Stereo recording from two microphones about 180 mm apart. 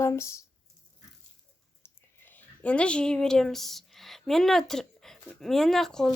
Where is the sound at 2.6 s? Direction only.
5° left (ahead or behind).